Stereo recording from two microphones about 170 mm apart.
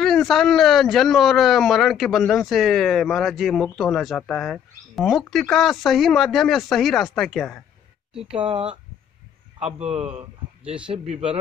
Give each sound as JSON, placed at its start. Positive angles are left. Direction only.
{"t": 0.0, "sound": "speech", "side_deg": 0}
{"t": 9.8, "sound": "speech", "side_deg": -35}
{"t": 10.6, "sound": "speech", "side_deg": -5}
{"t": 11.1, "sound": "speech", "side_deg": -35}